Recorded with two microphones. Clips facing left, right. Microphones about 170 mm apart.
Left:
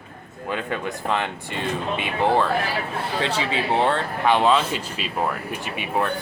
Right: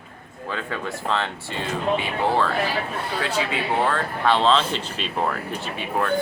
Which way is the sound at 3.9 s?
20° left (ahead or behind).